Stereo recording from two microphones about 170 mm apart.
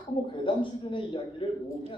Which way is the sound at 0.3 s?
30° left (ahead or behind).